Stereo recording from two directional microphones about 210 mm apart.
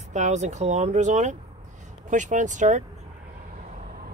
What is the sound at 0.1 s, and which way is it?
Speech, 35° right (ahead or behind).